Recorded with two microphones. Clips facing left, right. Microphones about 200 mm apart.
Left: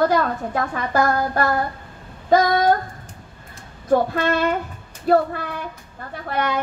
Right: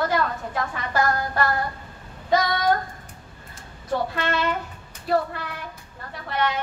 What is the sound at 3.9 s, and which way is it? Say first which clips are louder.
Child singing: left 7 dB; 45° left (ahead or behind).